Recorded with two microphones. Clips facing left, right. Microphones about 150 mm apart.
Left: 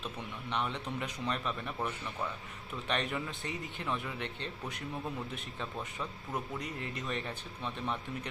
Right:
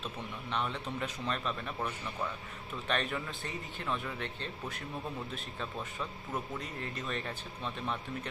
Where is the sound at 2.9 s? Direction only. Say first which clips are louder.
Even; 15° left (ahead or behind).